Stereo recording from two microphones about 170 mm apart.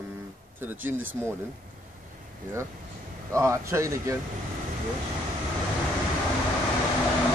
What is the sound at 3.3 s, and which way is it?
Speech, 15° right (ahead or behind).